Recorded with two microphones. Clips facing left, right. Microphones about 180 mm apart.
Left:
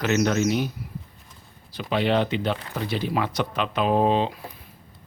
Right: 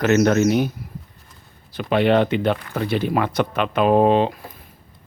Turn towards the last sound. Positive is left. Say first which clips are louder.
# right 5 dB
turn(degrees=-55)  # may be behind; listen again after turning